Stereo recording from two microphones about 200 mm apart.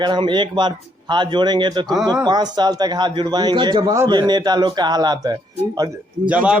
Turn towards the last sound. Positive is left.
turn(degrees=-5)  # may be behind; listen again after turning